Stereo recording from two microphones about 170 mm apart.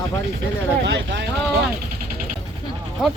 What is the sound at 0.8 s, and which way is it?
Vehicle, 90° right.